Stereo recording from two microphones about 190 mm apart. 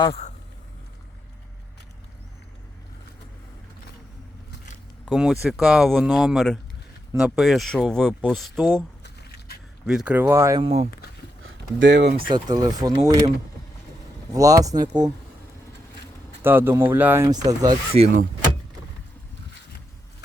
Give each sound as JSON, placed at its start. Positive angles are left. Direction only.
{"t": 0.0, "sound": "speech", "side_deg": 35}
{"t": 5.0, "sound": "speech", "side_deg": -5}
{"t": 9.8, "sound": "speech", "side_deg": -5}
{"t": 10.6, "sound": "speech", "side_deg": -30}
{"t": 11.4, "sound": "speech", "side_deg": -70}
{"t": 12.3, "sound": "speech", "side_deg": -20}
{"t": 14.3, "sound": "speech", "side_deg": -20}
{"t": 16.4, "sound": "speech", "side_deg": -10}
{"t": 17.9, "sound": "speech", "side_deg": -40}